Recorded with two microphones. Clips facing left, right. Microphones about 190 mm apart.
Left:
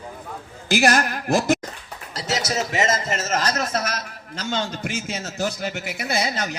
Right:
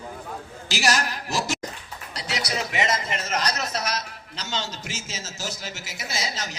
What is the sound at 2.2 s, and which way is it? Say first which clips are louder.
A man's voice: left 5 dB; 45° left (ahead or behind).